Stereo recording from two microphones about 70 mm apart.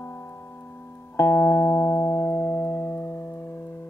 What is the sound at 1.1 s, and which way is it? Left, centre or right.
Music, left.